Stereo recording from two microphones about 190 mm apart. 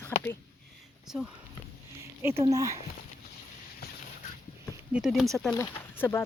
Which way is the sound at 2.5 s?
15° right (ahead or behind).